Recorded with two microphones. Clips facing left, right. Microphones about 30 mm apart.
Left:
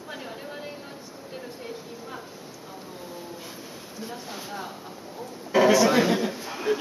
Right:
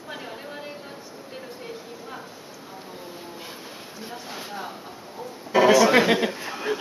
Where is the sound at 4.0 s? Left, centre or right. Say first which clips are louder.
Even; centre.